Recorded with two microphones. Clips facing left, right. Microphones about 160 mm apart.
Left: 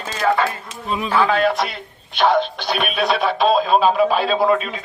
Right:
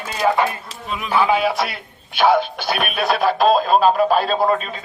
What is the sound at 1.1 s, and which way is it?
Speech, 10° right (ahead or behind).